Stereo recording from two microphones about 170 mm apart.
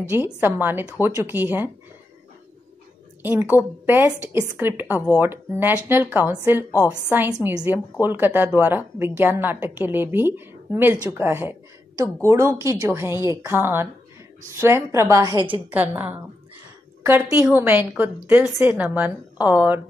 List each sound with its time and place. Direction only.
0.1 s a woman's voice: 15° right (ahead or behind)
3.2 s a woman's voice: 10° right (ahead or behind)
6.7 s a woman's voice: 15° left (ahead or behind)
7.4 s a woman's voice: 10° right (ahead or behind)